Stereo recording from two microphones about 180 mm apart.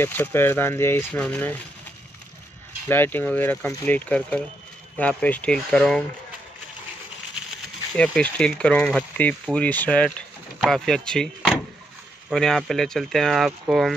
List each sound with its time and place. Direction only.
0.0 s speech: 10° left (ahead or behind)
2.9 s speech: 10° left (ahead or behind)
7.9 s speech: 5° left (ahead or behind)